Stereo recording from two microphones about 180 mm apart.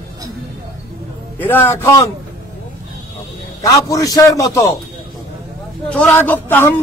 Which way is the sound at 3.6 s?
20° left (ahead or behind).